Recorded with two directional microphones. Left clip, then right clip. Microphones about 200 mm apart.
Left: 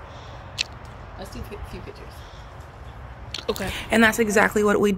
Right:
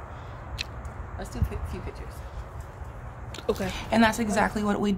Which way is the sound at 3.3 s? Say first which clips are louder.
Left 8 dB; 5° right (ahead or behind).